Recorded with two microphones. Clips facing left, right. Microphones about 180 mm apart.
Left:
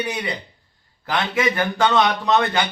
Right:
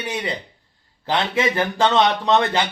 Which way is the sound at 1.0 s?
30° right (ahead or behind).